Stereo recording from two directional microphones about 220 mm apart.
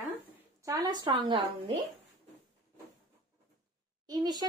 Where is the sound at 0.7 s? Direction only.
20° right (ahead or behind).